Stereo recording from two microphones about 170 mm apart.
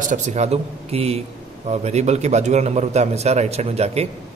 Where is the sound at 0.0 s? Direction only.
45° right (ahead or behind).